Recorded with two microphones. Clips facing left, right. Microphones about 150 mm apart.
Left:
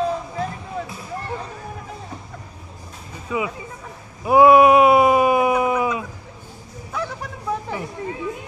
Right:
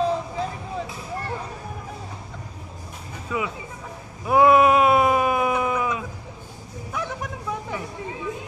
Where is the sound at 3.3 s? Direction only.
5° left (ahead or behind).